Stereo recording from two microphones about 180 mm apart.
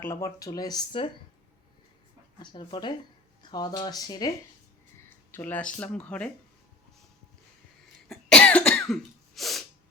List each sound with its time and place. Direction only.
0.0 s speech: 15° left (ahead or behind)
2.4 s speech: 25° left (ahead or behind)
5.0 s speech: 10° left (ahead or behind)
8.0 s cough: 5° left (ahead or behind)